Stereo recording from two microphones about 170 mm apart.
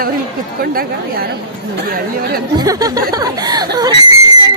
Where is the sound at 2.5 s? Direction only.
20° right (ahead or behind).